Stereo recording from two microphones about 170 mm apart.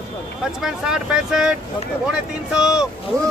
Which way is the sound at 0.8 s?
5° right (ahead or behind).